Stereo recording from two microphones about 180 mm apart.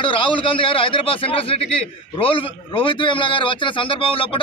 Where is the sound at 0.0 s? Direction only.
30° left (ahead or behind).